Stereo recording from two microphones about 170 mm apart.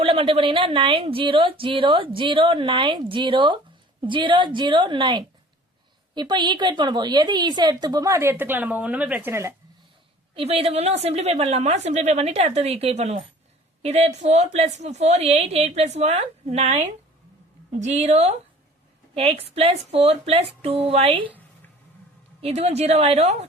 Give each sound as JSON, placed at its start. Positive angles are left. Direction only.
{"t": 0.0, "sound": "a woman's voice", "side_deg": -35}
{"t": 10.3, "sound": "a woman's voice", "side_deg": -35}
{"t": 22.4, "sound": "a woman's voice", "side_deg": -35}